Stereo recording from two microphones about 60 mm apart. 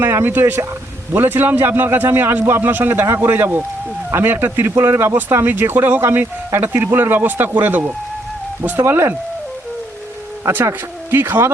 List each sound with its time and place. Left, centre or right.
0.0 s a man's voice: right
5.1 s a man's voice: right
8.8 s speech: right
10.6 s speech: right